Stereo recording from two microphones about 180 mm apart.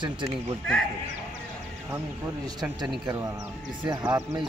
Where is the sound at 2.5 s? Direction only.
20° right (ahead or behind).